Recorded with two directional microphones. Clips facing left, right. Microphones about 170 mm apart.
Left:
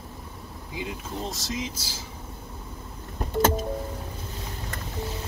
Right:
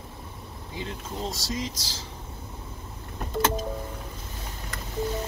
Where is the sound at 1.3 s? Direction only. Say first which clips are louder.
Even; centre (ahead or behind).